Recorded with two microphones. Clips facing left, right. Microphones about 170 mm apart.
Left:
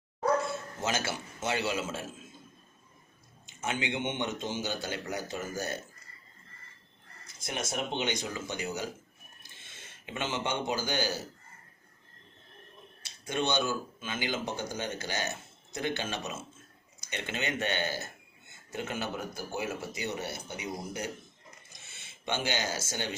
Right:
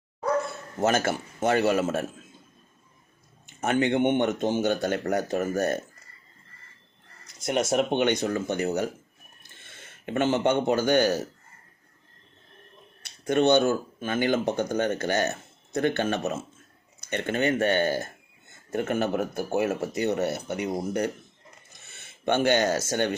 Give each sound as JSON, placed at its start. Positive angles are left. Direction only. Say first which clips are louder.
{"t": 0.8, "sound": "a man's voice", "louder": "right 10 dB", "side_deg": -60}
{"t": 3.4, "sound": "a man's voice", "louder": "right 10 dB", "side_deg": -60}
{"t": 7.4, "sound": "a man's voice", "louder": "right 11 dB", "side_deg": -60}
{"t": 13.0, "sound": "a man's voice", "louder": "right 10 dB", "side_deg": -60}
{"t": 21.7, "sound": "a sound", "louder": "right 2 dB", "side_deg": -60}